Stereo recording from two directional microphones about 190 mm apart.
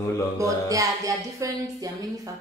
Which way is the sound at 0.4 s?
15° right (ahead or behind).